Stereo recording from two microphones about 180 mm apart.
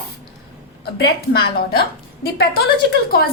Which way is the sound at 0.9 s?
60° left (ahead or behind).